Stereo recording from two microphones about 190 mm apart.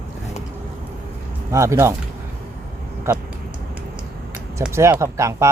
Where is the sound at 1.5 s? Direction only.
15° right (ahead or behind).